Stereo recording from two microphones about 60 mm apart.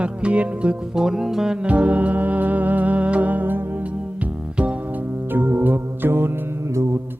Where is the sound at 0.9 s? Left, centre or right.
Centre.